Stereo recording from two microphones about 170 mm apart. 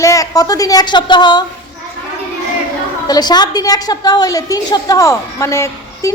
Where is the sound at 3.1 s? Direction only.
25° left (ahead or behind).